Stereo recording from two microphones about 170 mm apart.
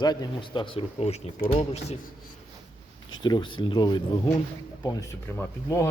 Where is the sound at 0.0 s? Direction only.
25° left (ahead or behind).